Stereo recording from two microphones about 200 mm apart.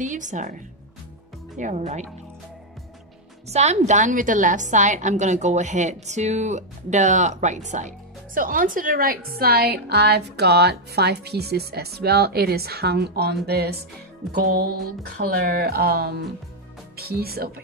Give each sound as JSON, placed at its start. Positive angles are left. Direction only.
{"t": 0.0, "sound": "a woman's voice", "side_deg": -40}
{"t": 1.6, "sound": "a woman's voice", "side_deg": -35}
{"t": 3.4, "sound": "a woman's voice", "side_deg": -35}